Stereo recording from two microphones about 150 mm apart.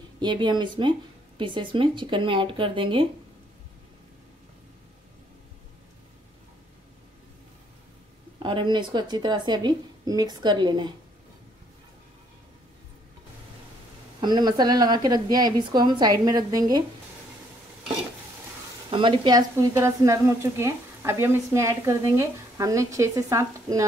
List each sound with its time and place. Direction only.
0.2 s speech: 30° right (ahead or behind)
8.4 s speech: 30° right (ahead or behind)
14.2 s speech: 30° right (ahead or behind)
18.9 s speech: 35° right (ahead or behind)
19.5 s speech: 20° right (ahead or behind)